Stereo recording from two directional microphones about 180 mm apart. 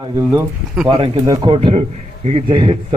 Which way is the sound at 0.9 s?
25° right (ahead or behind).